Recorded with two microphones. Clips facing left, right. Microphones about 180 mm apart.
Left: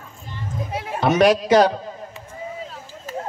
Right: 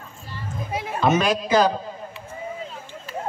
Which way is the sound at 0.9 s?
65° left (ahead or behind).